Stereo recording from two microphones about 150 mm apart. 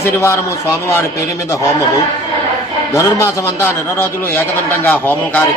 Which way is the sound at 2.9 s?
20° left (ahead or behind).